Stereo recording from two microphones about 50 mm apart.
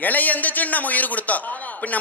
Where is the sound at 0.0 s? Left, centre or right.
Left.